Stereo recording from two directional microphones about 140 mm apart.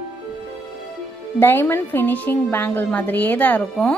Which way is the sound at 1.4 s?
15° left (ahead or behind).